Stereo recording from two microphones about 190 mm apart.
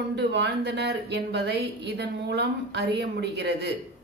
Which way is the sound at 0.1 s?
65° right (ahead or behind).